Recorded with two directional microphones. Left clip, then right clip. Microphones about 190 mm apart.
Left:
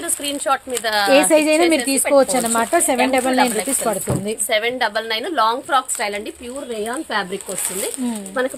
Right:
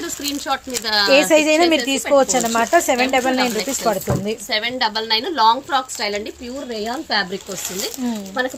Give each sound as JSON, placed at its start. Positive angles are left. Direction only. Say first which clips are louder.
{"t": 0.3, "sound": "a woman's voice", "louder": "left 3 dB", "side_deg": 55}
{"t": 1.3, "sound": "speech", "louder": "even", "side_deg": -5}
{"t": 4.4, "sound": "a woman's voice", "louder": "left 2 dB", "side_deg": 55}
{"t": 6.7, "sound": "speech", "louder": "right 2 dB", "side_deg": 45}
{"t": 8.4, "sound": "speech", "louder": "left 1 dB", "side_deg": 40}